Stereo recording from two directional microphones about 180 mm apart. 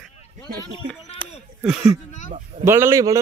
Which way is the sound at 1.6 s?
Centre (ahead or behind).